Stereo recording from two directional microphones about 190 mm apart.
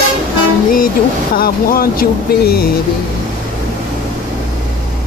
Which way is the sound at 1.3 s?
50° left (ahead or behind).